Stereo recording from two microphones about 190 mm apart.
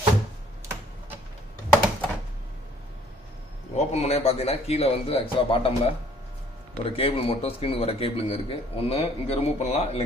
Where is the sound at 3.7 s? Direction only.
35° left (ahead or behind).